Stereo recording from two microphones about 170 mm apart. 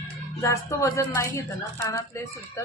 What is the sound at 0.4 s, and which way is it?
A woman's voice, 20° left (ahead or behind).